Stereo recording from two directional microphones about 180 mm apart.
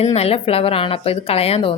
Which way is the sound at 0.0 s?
35° left (ahead or behind).